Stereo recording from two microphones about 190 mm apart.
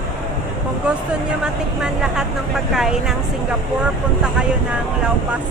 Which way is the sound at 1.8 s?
5° right (ahead or behind).